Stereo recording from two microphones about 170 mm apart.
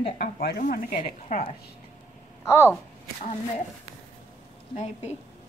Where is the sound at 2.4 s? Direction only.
15° left (ahead or behind).